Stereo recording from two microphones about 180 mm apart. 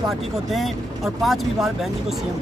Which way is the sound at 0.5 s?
Centre (ahead or behind).